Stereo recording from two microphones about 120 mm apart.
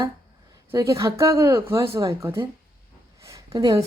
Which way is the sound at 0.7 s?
25° right (ahead or behind).